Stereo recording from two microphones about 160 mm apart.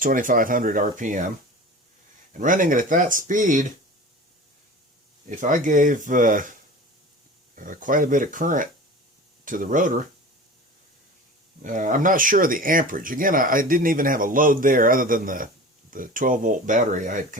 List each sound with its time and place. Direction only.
0.0 s speech: 60° right (ahead or behind)
2.4 s speech: 55° right (ahead or behind)
5.3 s speech: 55° right (ahead or behind)
11.6 s speech: 55° right (ahead or behind)